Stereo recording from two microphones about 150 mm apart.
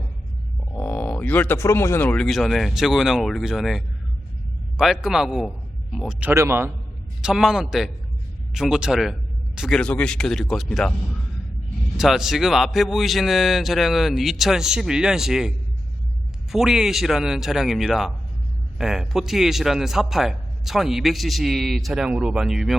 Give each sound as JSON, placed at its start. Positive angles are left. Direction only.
{"t": 0.7, "sound": "a man's voice", "side_deg": 10}
{"t": 6.3, "sound": "a man's voice", "side_deg": -20}
{"t": 7.2, "sound": "a man's voice", "side_deg": -5}
{"t": 11.9, "sound": "a man's voice", "side_deg": 0}